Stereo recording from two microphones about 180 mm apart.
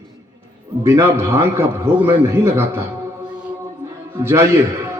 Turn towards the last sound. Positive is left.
turn(degrees=-15)  # may be behind; listen again after turning